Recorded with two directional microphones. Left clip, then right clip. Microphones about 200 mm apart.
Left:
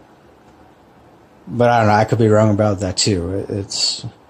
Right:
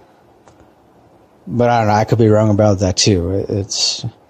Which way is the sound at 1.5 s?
25° right (ahead or behind).